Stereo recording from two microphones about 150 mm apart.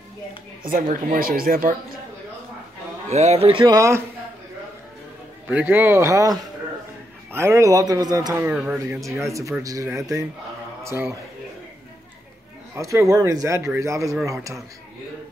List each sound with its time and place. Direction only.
0.7 s speech: 65° right (ahead or behind)
3.1 s speech: 45° right (ahead or behind); by 4.0 s 20° right (ahead or behind)
5.5 s speech: 10° right (ahead or behind)
8.5 s a man's voice: 10° right (ahead or behind)
12.7 s speech: 20° right (ahead or behind)